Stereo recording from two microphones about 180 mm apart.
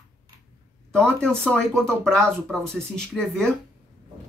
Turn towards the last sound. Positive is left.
turn(degrees=5)  # may be behind; listen again after turning